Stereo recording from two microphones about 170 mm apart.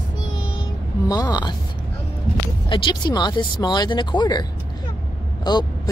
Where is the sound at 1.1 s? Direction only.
20° left (ahead or behind).